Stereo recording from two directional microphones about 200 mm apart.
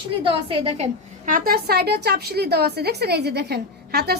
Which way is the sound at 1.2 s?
45° right (ahead or behind).